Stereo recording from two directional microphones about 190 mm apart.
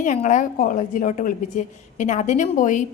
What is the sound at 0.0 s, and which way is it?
A woman's voice, 40° left (ahead or behind).